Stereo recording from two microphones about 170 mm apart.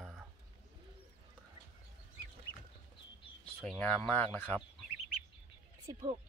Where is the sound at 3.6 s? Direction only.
5° left (ahead or behind).